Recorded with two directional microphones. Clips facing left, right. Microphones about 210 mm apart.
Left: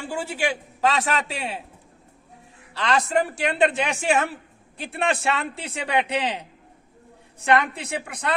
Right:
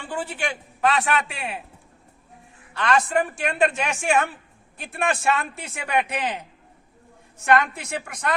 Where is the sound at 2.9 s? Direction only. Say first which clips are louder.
Even; 25° left (ahead or behind).